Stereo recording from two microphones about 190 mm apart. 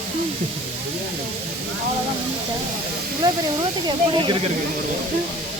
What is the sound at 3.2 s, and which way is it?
Speech, 25° right (ahead or behind).